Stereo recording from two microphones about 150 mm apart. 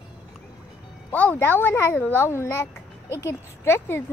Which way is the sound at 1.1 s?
10° left (ahead or behind).